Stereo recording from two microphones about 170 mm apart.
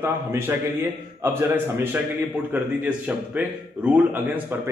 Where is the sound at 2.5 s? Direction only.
10° right (ahead or behind).